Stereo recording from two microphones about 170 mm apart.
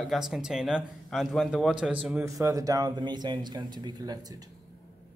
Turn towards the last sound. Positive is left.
turn(degrees=-20)  # may be behind; listen again after turning